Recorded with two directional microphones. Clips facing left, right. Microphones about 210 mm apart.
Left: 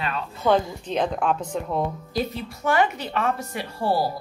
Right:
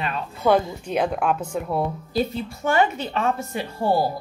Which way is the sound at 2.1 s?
30° right (ahead or behind).